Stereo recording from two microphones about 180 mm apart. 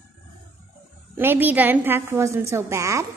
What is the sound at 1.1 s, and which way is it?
A woman's voice, 10° right (ahead or behind).